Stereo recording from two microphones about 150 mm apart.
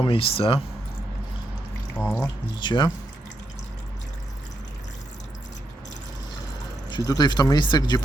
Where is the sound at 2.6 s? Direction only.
30° left (ahead or behind).